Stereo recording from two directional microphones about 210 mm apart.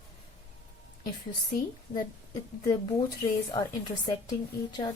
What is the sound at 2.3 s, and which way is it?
Speech, 20° left (ahead or behind).